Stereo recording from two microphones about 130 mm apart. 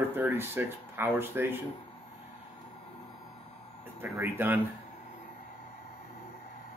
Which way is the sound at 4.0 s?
15° right (ahead or behind).